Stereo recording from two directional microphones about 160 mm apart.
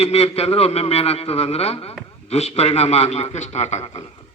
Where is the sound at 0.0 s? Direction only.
40° left (ahead or behind).